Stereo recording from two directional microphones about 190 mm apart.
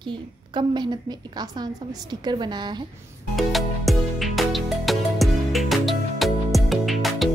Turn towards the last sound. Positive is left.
turn(degrees=0)  # may be behind; listen again after turning